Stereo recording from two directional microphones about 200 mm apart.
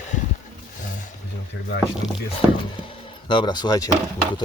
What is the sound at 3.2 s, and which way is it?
Speech, 20° left (ahead or behind).